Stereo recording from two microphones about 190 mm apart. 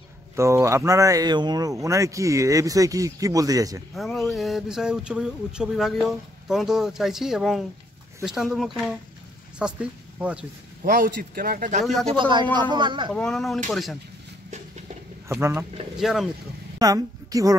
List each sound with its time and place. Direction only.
0.4 s speech: 15° right (ahead or behind)
3.9 s speech: centre (ahead or behind)
10.8 s a man's voice: 50° right (ahead or behind)
11.8 s speech: centre (ahead or behind)
12.2 s speech: 25° right (ahead or behind)
13.1 s speech: 5° left (ahead or behind)
15.2 s speech: 15° right (ahead or behind)
16.0 s speech: centre (ahead or behind)
16.7 s a woman's voice: 20° right (ahead or behind)